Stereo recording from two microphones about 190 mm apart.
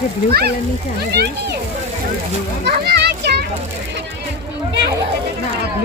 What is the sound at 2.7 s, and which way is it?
Children playing, 60° right (ahead or behind).